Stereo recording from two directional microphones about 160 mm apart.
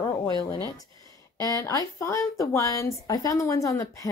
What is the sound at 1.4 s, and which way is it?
A woman's voice, 20° left (ahead or behind).